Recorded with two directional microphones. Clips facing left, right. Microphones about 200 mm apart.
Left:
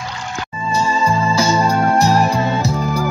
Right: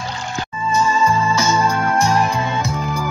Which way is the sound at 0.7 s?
35° left (ahead or behind).